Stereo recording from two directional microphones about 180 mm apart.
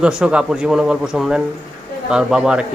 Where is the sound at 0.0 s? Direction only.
5° right (ahead or behind).